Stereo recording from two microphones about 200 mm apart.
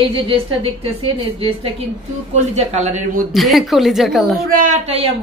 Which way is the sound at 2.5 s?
35° right (ahead or behind).